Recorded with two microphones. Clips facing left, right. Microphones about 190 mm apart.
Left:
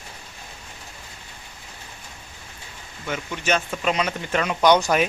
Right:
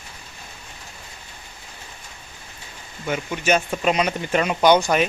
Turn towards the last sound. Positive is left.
turn(degrees=0)  # may be behind; listen again after turning